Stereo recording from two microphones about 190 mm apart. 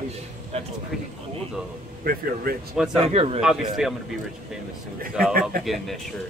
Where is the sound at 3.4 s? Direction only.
Centre (ahead or behind).